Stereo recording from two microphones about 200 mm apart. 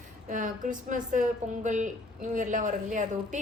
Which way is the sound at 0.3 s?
40° right (ahead or behind).